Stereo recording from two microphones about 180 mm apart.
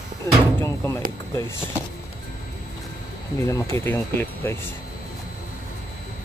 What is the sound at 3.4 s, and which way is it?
Speech, 15° left (ahead or behind).